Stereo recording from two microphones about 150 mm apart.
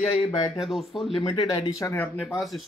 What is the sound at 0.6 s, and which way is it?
Speech, centre (ahead or behind).